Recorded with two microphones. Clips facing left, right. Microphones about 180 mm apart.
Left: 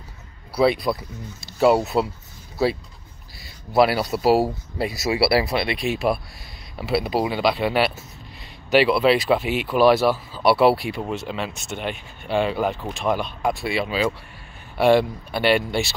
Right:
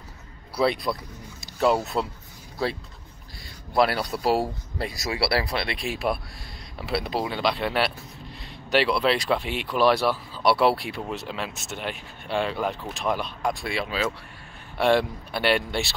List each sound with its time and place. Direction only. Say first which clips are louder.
0.6 s speech: left 5 dB; 5° left (ahead or behind)
1.9 s speech: left 5 dB; 30° left (ahead or behind)
2.6 s speech: left 6 dB; 5° left (ahead or behind)